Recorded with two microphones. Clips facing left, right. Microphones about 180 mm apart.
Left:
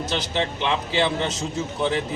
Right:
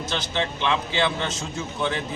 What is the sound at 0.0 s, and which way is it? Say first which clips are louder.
A man's voice: left 2 dB; 35° left (ahead or behind).